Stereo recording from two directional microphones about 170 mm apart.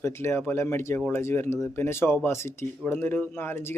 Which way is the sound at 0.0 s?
15° left (ahead or behind).